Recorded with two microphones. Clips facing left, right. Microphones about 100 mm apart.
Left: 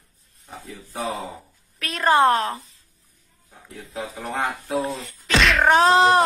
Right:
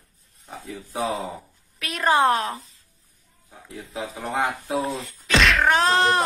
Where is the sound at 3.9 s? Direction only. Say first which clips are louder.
Right 1 dB; 15° right (ahead or behind).